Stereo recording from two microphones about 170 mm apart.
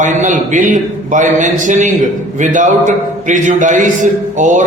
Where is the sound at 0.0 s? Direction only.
45° right (ahead or behind).